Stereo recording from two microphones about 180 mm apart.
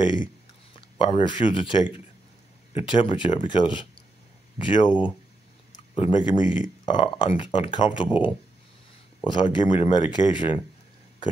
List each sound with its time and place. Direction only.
0.0 s speech: 25° left (ahead or behind)
5.9 s speech: 25° left (ahead or behind)